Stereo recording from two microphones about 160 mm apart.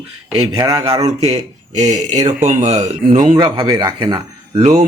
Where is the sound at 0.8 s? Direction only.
40° right (ahead or behind).